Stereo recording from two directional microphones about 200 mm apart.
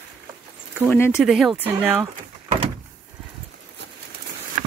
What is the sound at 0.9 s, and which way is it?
Speech, 10° left (ahead or behind).